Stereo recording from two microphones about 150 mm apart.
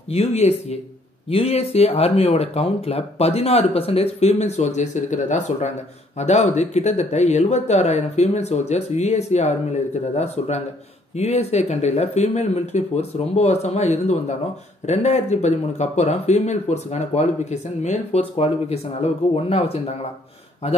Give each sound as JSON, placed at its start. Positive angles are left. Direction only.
{"t": 0.1, "sound": "speech", "side_deg": 45}